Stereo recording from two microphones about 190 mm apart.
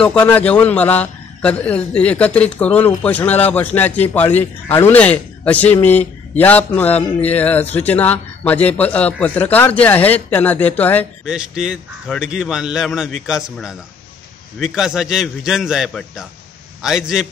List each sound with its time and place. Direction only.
0.0 s a man's voice: 5° left (ahead or behind)
11.2 s a man's voice: 5° right (ahead or behind)